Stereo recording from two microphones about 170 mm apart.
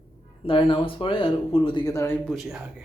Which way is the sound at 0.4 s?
30° left (ahead or behind).